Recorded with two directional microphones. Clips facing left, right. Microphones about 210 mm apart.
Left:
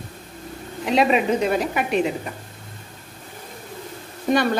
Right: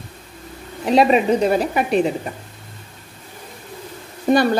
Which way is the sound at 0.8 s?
35° right (ahead or behind).